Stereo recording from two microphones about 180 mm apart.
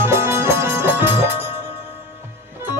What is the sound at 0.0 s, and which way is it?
Music, 15° right (ahead or behind).